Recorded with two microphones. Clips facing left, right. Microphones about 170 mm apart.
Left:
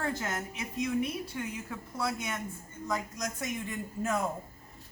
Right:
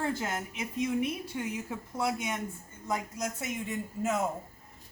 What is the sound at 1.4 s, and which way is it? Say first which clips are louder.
A woman's voice: right 2 dB; 20° right (ahead or behind).